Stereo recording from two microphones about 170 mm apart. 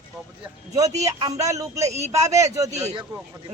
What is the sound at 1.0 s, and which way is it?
A man's voice, 20° right (ahead or behind).